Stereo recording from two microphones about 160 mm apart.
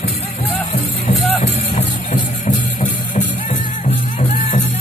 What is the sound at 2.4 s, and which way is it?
Music, 50° left (ahead or behind).